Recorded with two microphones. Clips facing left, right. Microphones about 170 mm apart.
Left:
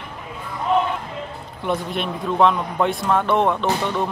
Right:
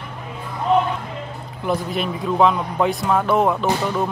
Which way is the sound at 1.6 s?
Centre (ahead or behind).